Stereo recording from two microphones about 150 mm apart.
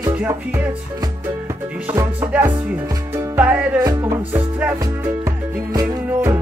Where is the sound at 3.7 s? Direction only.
20° right (ahead or behind).